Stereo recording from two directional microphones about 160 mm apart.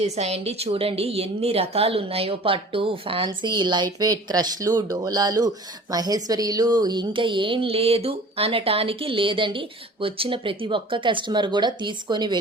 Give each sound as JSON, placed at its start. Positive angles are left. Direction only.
{"t": 0.0, "sound": "a woman's voice", "side_deg": -40}